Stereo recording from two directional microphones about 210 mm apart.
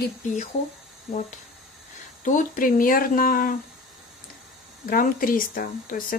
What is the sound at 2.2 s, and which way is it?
Speech, 35° left (ahead or behind).